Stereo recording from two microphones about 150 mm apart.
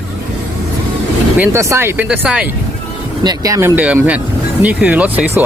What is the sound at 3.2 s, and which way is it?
Speech, 25° right (ahead or behind).